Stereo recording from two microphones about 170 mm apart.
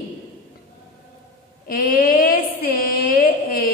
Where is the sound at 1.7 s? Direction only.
60° left (ahead or behind).